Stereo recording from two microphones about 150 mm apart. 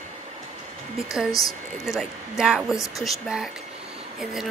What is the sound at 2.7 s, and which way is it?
Speech, 20° left (ahead or behind).